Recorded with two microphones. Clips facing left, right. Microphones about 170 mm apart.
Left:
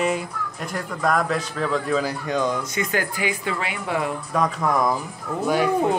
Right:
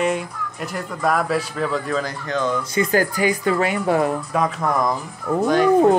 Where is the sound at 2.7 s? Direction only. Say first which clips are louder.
Right 6 dB; 40° right (ahead or behind).